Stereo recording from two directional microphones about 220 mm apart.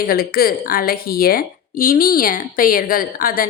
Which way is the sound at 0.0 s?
40° left (ahead or behind).